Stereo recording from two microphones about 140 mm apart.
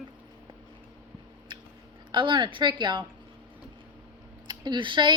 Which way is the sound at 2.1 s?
35° right (ahead or behind).